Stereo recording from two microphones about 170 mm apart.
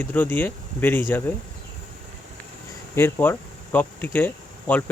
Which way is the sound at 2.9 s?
15° left (ahead or behind).